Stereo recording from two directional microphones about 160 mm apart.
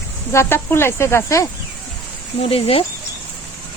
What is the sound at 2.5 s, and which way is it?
Speech, 35° left (ahead or behind).